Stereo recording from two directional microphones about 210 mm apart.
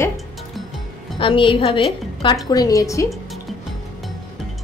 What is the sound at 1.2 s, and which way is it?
A woman's voice, 25° left (ahead or behind).